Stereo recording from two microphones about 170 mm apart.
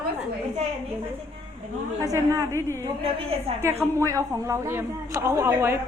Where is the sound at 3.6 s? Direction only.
15° right (ahead or behind).